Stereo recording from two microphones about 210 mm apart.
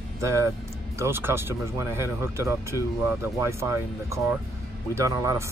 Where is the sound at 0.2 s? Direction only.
15° right (ahead or behind).